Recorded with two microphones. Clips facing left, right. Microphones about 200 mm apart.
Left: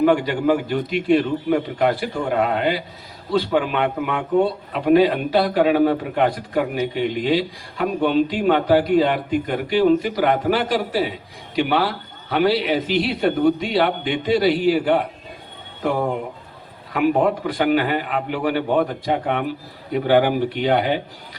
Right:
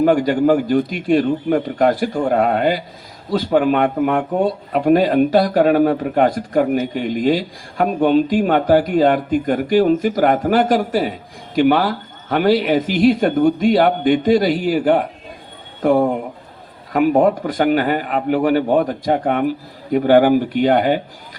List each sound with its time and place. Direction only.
0.0 s speech: 45° right (ahead or behind)